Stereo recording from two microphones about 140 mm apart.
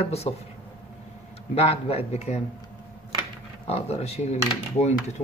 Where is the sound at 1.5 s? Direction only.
45° left (ahead or behind).